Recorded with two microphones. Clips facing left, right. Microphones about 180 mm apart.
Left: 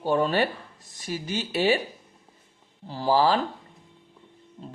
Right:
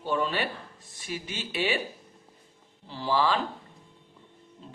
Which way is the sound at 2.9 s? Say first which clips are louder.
Left 5 dB; 40° left (ahead or behind).